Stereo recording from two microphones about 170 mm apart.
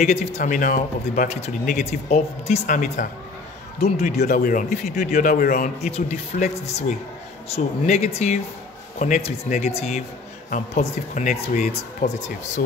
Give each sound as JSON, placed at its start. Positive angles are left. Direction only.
{"t": 0.0, "sound": "speech", "side_deg": 40}
{"t": 2.6, "sound": "a man's voice", "side_deg": 50}